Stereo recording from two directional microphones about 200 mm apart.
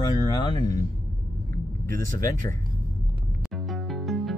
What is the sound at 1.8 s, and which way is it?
Speech, 15° left (ahead or behind).